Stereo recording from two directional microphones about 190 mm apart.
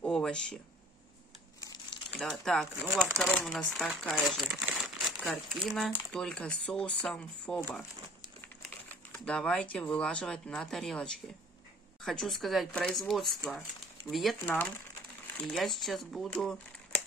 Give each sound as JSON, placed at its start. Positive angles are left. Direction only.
{"t": 0.0, "sound": "a sound", "side_deg": 5}
{"t": 1.6, "sound": "crumpling", "side_deg": 20}
{"t": 2.1, "sound": "speech", "side_deg": 5}
{"t": 2.8, "sound": "speech", "side_deg": -10}
{"t": 3.2, "sound": "speech", "side_deg": 0}